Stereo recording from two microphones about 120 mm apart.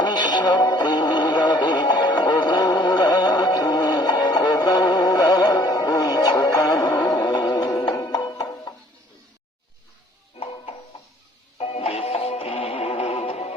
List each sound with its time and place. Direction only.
0.0 s music: 35° left (ahead or behind)
10.4 s a sound: 60° left (ahead or behind)
11.5 s music: 55° left (ahead or behind)